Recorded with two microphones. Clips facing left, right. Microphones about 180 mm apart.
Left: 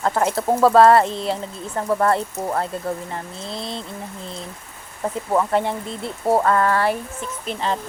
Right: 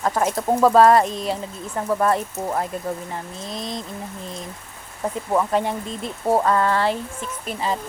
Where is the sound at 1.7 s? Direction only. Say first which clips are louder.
Left 1 dB; 5° right (ahead or behind).